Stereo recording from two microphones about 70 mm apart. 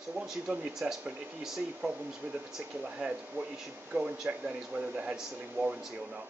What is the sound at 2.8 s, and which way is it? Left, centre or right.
Speech, centre.